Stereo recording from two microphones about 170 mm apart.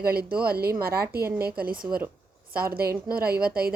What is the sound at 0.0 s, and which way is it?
Speech, 65° right (ahead or behind).